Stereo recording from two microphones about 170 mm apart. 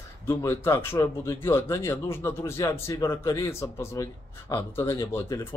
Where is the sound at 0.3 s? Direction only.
15° left (ahead or behind).